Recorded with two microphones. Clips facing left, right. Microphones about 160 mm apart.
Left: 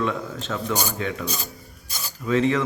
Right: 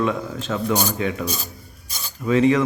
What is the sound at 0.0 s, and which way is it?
A man's voice, 15° right (ahead or behind).